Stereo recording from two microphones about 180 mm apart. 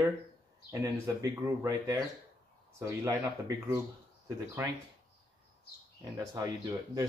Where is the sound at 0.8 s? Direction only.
20° right (ahead or behind).